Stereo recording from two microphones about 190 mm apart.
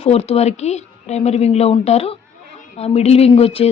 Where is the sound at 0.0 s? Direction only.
35° left (ahead or behind).